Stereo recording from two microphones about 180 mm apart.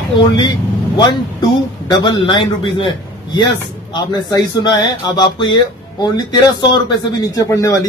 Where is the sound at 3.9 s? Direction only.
20° left (ahead or behind).